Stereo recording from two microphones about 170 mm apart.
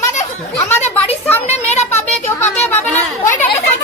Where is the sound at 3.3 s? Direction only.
45° left (ahead or behind).